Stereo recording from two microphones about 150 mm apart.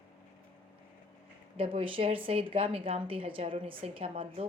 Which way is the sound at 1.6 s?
35° right (ahead or behind).